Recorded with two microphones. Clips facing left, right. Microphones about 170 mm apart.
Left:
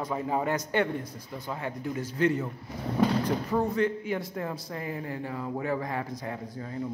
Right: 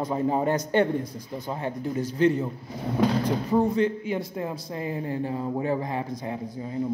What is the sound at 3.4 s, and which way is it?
Speech, 20° right (ahead or behind).